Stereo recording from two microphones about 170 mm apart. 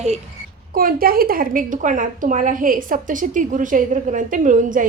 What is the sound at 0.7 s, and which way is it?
A woman's voice, 60° right (ahead or behind).